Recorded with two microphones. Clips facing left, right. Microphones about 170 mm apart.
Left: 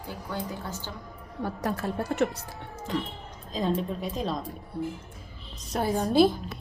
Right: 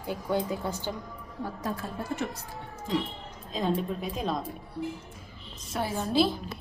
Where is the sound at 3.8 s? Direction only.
Centre (ahead or behind).